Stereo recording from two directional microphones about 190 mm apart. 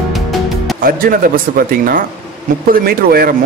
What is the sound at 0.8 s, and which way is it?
Speech, 50° right (ahead or behind).